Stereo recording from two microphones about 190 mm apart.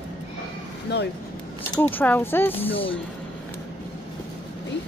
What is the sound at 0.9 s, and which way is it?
Speech, 60° left (ahead or behind).